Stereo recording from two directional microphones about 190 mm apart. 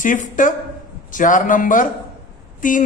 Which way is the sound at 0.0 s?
45° left (ahead or behind).